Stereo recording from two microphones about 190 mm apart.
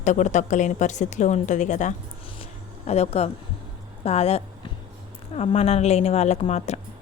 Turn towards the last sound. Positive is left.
turn(degrees=35)  # may be behind; listen again after turning